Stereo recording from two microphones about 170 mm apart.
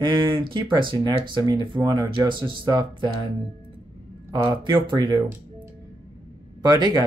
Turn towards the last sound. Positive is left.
turn(degrees=-25)  # may be behind; listen again after turning